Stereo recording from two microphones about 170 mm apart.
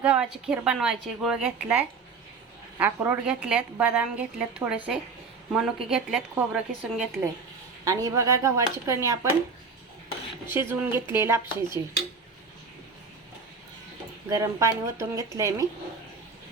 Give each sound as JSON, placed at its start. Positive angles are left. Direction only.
{"t": 0.0, "sound": "a woman's voice", "side_deg": -5}
{"t": 7.9, "sound": "speech", "side_deg": -20}
{"t": 10.5, "sound": "a woman's voice", "side_deg": -15}
{"t": 14.3, "sound": "a woman's voice", "side_deg": -20}